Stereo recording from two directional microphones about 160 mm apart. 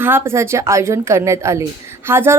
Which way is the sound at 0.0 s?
15° right (ahead or behind).